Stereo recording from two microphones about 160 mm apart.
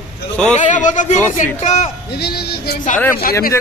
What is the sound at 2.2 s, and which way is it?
Speech, 90° left.